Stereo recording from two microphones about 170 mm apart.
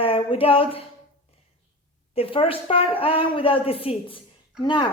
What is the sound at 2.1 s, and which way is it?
A woman's voice, 35° left (ahead or behind).